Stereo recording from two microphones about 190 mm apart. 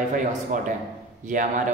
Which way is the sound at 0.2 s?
40° right (ahead or behind).